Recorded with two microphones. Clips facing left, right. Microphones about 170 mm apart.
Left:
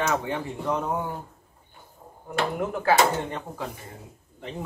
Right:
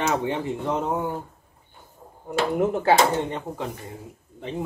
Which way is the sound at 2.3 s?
25° right (ahead or behind).